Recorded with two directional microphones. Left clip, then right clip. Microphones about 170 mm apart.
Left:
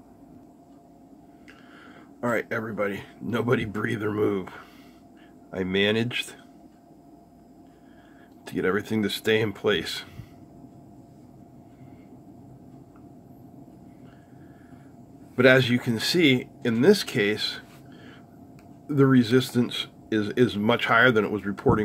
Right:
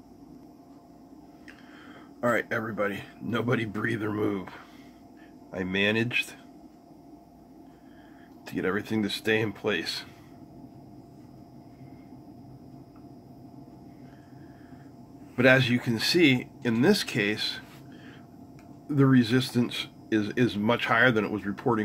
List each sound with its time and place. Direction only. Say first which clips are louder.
2.1 s speech: even; 15° left (ahead or behind)
8.5 s speech: left 4 dB; 20° left (ahead or behind)
15.3 s speech: left 3 dB; 25° left (ahead or behind)
18.9 s speech: left 3 dB; 20° left (ahead or behind)